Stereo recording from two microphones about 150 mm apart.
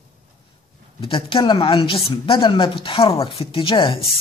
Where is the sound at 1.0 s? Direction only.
35° left (ahead or behind).